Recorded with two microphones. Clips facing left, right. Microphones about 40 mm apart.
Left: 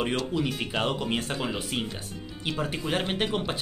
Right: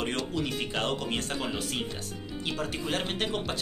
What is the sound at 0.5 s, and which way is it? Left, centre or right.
Speech, centre.